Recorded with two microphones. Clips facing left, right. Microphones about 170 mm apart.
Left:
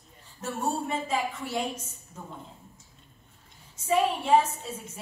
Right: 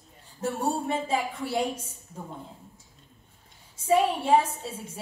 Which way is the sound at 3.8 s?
30° right (ahead or behind).